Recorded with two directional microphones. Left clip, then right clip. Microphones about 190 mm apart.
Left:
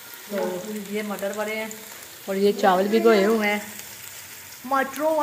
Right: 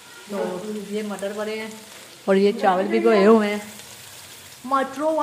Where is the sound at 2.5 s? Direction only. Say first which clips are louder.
Even; 15° left (ahead or behind).